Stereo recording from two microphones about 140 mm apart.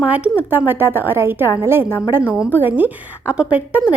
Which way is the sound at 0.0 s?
10° right (ahead or behind).